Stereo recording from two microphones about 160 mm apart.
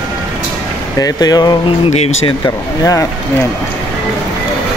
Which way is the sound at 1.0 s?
25° left (ahead or behind).